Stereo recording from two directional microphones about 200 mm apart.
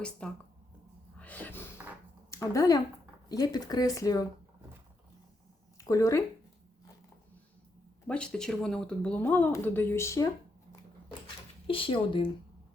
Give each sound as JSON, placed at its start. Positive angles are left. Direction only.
{"t": 0.2, "sound": "speech", "side_deg": 5}
{"t": 1.2, "sound": "a sound", "side_deg": 10}
{"t": 2.3, "sound": "speech", "side_deg": 15}
{"t": 5.7, "sound": "speech", "side_deg": 15}
{"t": 8.0, "sound": "speech", "side_deg": 5}
{"t": 11.7, "sound": "speech", "side_deg": 25}